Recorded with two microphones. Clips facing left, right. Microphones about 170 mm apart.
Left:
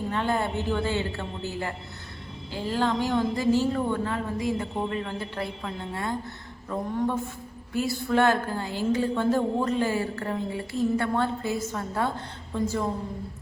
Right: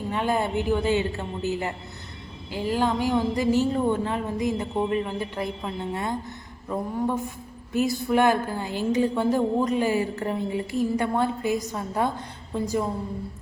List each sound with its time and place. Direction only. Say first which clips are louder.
0.1 s a woman's voice: right 3 dB; 15° right (ahead or behind)